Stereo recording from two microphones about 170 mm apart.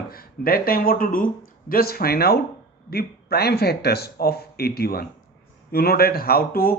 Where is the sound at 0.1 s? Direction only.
60° left (ahead or behind).